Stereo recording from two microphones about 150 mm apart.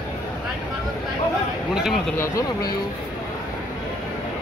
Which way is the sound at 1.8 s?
5° right (ahead or behind).